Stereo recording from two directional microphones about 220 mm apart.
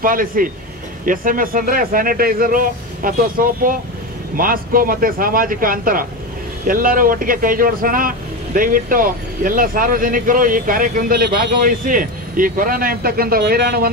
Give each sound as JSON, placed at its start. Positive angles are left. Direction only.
{"t": 0.0, "sound": "speech", "side_deg": -40}